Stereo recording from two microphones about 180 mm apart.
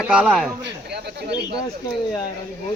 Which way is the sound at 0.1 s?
5° right (ahead or behind).